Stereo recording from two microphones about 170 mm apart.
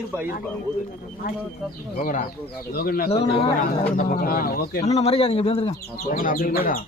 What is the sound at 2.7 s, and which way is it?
Speech, 60° left (ahead or behind).